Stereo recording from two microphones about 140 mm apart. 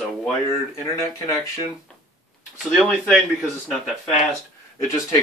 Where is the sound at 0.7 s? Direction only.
20° left (ahead or behind).